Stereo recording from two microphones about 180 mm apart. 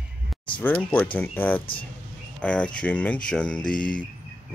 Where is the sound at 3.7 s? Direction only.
50° left (ahead or behind).